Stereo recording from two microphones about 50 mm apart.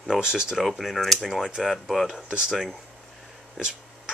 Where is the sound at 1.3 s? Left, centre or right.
Centre.